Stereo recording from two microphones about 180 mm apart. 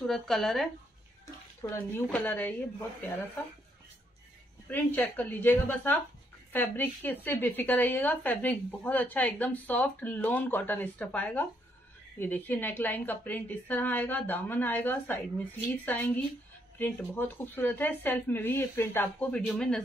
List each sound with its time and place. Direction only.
0.0 s speech: centre (ahead or behind)
1.6 s a woman's voice: 15° left (ahead or behind)
4.6 s a woman's voice: 10° left (ahead or behind)